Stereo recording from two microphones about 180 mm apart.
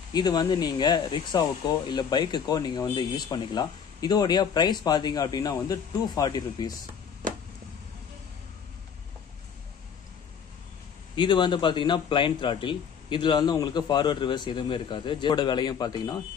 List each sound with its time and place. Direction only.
0.1 s a man's voice: 25° left (ahead or behind)
11.1 s a man's voice: 25° left (ahead or behind)